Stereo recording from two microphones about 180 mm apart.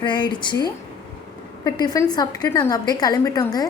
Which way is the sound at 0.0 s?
25° left (ahead or behind).